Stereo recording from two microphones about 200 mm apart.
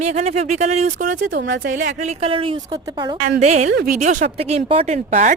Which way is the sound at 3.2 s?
35° right (ahead or behind).